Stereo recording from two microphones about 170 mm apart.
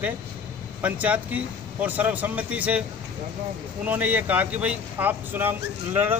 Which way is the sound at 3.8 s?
10° right (ahead or behind).